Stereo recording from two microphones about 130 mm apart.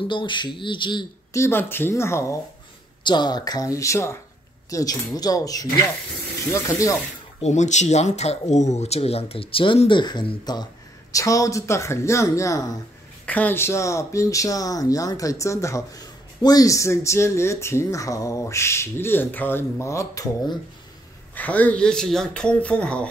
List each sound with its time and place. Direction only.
0.1 s speech: 35° left (ahead or behind)
1.3 s speech: 20° left (ahead or behind)
3.0 s speech: 35° left (ahead or behind)
7.4 s speech: 65° left (ahead or behind); by 12.6 s 25° left (ahead or behind)
13.2 s speech: 10° left (ahead or behind)
21.4 s speech: 10° left (ahead or behind)